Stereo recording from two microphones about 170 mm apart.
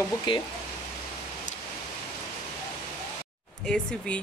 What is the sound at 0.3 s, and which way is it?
Speech, 30° left (ahead or behind).